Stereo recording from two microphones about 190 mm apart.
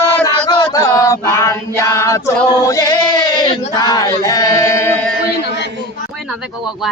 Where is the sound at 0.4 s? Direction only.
25° left (ahead or behind).